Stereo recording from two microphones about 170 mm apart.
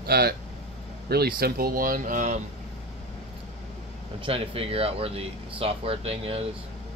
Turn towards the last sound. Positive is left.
turn(degrees=-35)  # may be behind; listen again after turning